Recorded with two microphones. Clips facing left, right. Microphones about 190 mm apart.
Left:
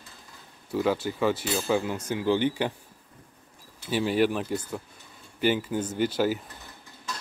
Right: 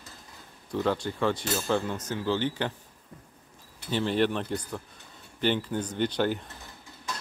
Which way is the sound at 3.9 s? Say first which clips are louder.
Left 2 dB; 10° left (ahead or behind).